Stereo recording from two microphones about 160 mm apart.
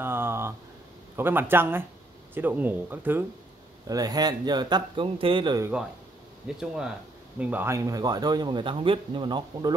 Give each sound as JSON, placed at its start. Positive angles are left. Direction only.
{"t": 0.0, "sound": "a sound", "side_deg": -15}
{"t": 1.1, "sound": "speech", "side_deg": -15}
{"t": 3.8, "sound": "speech", "side_deg": -25}
{"t": 6.4, "sound": "speech", "side_deg": -5}